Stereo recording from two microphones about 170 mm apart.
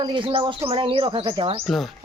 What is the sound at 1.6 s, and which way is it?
Speech, centre (ahead or behind).